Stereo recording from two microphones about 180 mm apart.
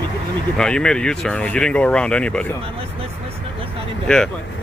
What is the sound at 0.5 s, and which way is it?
Speech, 5° left (ahead or behind).